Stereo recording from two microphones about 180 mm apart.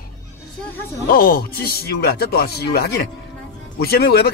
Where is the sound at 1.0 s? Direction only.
55° left (ahead or behind).